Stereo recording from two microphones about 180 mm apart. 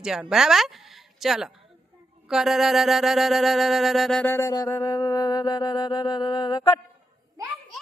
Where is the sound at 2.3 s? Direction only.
Centre (ahead or behind); by 6.6 s 25° left (ahead or behind).